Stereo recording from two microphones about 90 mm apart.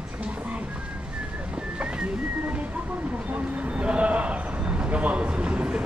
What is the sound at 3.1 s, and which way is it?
Speech, 15° right (ahead or behind).